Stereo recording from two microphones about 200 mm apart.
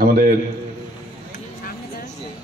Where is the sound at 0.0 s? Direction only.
45° right (ahead or behind).